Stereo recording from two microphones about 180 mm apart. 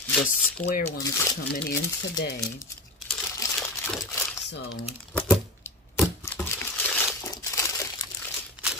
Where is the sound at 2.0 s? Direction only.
65° left (ahead or behind).